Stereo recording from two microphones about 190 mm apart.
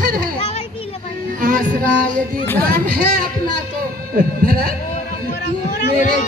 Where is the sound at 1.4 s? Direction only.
45° right (ahead or behind).